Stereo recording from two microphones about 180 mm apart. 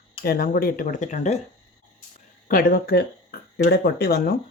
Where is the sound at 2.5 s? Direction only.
50° left (ahead or behind).